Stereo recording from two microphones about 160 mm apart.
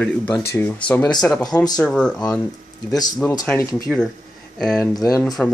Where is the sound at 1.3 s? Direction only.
25° left (ahead or behind).